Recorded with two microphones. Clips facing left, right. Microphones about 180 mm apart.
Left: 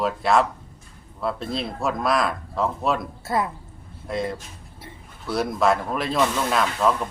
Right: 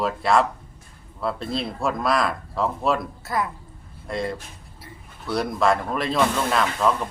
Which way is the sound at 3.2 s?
25° left (ahead or behind).